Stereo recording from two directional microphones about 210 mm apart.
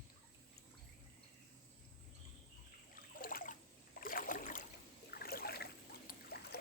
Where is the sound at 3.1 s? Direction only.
40° left (ahead or behind).